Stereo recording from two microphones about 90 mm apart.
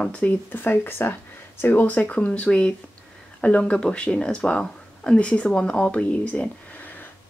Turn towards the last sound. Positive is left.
turn(degrees=15)  # may be behind; listen again after turning